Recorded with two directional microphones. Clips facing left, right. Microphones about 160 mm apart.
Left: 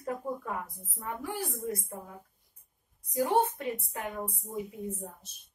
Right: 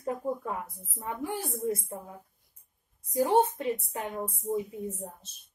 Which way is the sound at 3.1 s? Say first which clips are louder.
Right 3 dB; 25° right (ahead or behind).